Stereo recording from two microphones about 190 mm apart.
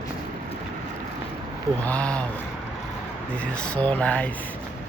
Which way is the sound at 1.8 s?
5° left (ahead or behind).